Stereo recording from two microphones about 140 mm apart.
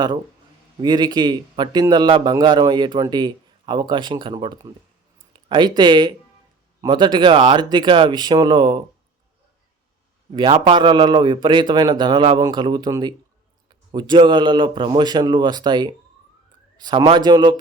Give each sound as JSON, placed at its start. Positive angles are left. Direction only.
{"t": 0.8, "sound": "a man's voice", "side_deg": -30}
{"t": 10.3, "sound": "a man's voice", "side_deg": -35}